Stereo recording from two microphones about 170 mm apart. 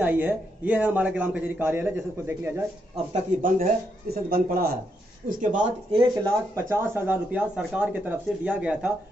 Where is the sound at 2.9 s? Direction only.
45° right (ahead or behind).